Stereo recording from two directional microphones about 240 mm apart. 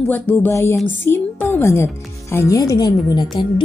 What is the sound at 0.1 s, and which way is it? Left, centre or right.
Speech, centre.